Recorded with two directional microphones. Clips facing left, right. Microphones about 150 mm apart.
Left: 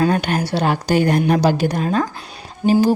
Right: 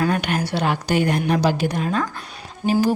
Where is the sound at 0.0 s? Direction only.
35° left (ahead or behind).